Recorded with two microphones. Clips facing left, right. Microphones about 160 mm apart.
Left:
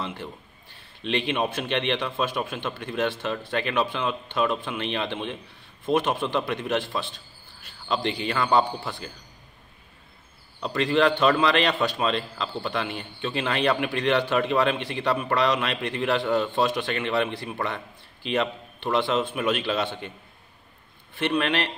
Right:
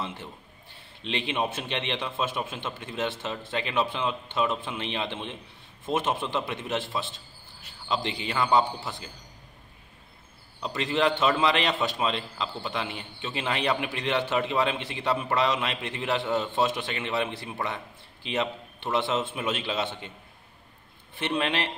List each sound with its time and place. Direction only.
0.0 s a man's voice: 20° right (ahead or behind)
10.6 s a man's voice: 20° right (ahead or behind)
21.1 s a man's voice: 20° right (ahead or behind)